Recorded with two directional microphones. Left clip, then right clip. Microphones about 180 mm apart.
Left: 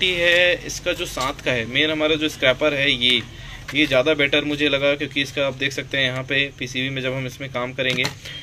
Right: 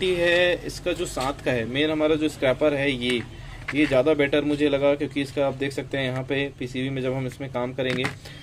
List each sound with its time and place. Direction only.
0.0 s speech: 15° right (ahead or behind)